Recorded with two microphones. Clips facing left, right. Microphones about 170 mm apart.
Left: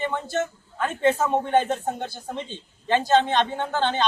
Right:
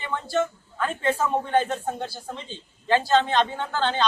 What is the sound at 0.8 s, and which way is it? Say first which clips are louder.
A man's voice: left 3 dB; 20° left (ahead or behind).